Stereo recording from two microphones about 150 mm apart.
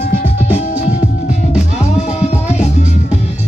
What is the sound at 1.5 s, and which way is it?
Music, 45° left (ahead or behind).